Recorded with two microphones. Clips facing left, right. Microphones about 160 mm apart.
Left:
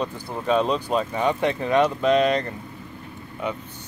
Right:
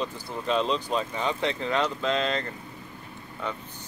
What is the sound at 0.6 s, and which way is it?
Speech, 10° left (ahead or behind).